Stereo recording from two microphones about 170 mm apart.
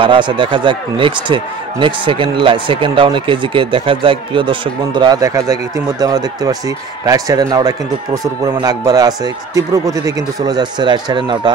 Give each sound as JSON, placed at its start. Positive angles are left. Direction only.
{"t": 0.0, "sound": "speech", "side_deg": -30}